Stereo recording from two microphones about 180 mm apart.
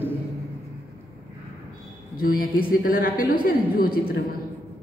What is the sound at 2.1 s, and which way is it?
A woman's voice, 55° left (ahead or behind).